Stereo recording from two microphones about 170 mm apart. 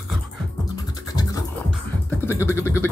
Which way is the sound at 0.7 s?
20° left (ahead or behind).